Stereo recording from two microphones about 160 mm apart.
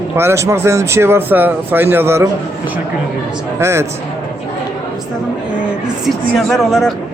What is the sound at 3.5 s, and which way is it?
Speech, 15° right (ahead or behind).